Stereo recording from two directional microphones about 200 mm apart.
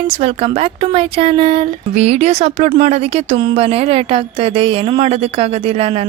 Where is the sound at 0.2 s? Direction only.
30° right (ahead or behind).